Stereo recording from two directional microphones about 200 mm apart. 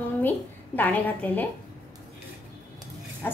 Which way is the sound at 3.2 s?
10° left (ahead or behind).